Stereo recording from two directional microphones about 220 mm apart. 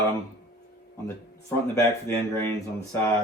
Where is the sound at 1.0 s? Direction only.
10° left (ahead or behind).